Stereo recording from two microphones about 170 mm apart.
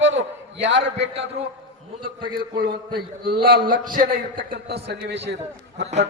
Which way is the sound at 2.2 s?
55° right (ahead or behind).